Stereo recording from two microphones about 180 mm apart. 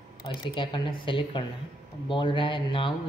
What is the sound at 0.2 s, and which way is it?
Speech, 25° left (ahead or behind).